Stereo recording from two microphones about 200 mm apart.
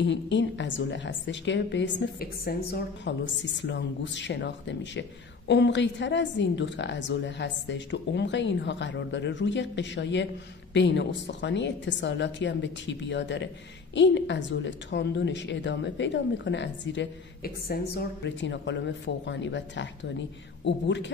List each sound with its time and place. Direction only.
0.0 s a woman's voice: 60° left (ahead or behind)